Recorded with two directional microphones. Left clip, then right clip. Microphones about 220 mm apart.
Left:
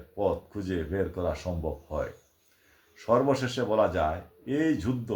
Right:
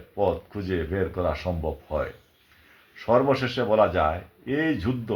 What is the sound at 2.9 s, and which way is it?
Speech, 30° right (ahead or behind).